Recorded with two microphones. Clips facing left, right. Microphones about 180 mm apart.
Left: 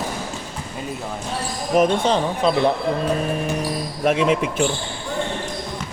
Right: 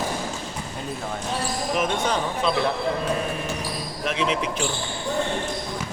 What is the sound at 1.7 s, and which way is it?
Speech, 35° left (ahead or behind).